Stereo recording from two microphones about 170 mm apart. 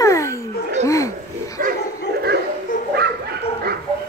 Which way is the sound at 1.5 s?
60° right (ahead or behind).